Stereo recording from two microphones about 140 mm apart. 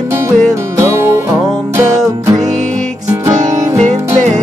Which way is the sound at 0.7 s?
20° right (ahead or behind).